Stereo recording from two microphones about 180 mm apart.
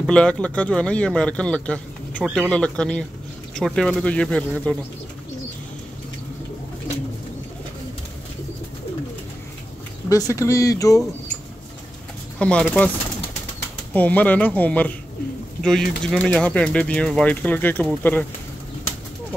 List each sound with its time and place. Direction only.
0.0 s speech: 5° left (ahead or behind)
10.0 s speech: 20° left (ahead or behind)
12.4 s speech: 5° left (ahead or behind)
13.9 s speech: 10° left (ahead or behind)